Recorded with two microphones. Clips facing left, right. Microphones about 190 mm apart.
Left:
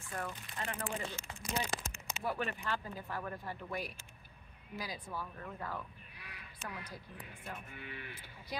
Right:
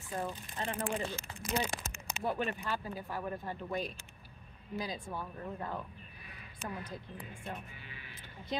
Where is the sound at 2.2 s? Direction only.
20° right (ahead or behind).